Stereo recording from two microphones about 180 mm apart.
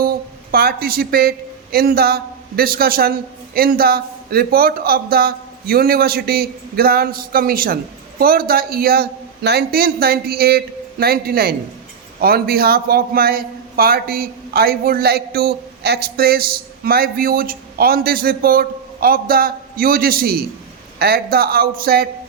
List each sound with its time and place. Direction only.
0.0 s a man's voice: 60° right (ahead or behind)